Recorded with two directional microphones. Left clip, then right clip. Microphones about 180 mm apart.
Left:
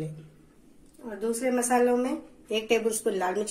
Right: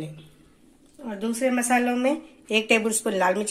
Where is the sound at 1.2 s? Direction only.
45° right (ahead or behind).